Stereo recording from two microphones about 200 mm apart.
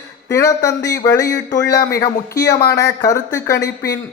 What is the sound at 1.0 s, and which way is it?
Speech, 15° left (ahead or behind).